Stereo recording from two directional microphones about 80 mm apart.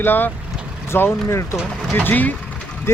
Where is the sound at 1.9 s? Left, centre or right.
Left.